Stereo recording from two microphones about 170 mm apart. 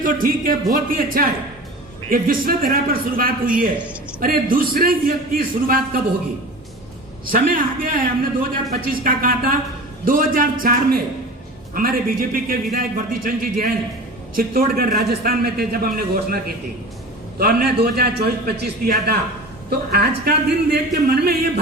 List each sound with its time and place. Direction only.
0.0 s a man's voice: 55° right (ahead or behind)
7.3 s a man's voice: 55° right (ahead or behind)